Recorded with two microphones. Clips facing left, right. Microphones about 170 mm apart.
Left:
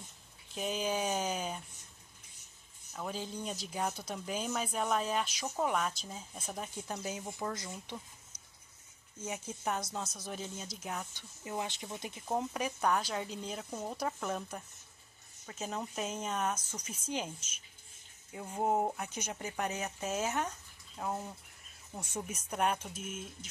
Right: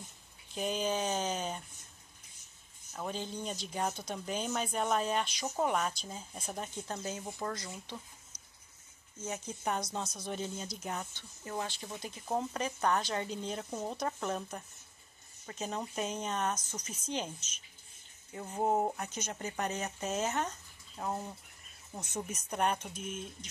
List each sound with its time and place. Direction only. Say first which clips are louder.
0.6 s speech: right 1 dB; 5° left (ahead or behind)
2.9 s speech: right 1 dB; centre (ahead or behind)
9.2 s speech: right 1 dB; 10° left (ahead or behind)
11.1 s speech: even; 15° left (ahead or behind)